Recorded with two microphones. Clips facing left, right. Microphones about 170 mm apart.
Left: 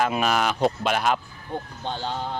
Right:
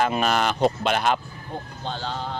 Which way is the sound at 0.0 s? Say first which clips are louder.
Right 1 dB; 5° left (ahead or behind).